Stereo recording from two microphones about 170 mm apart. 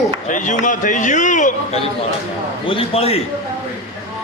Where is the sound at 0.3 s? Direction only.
50° left (ahead or behind).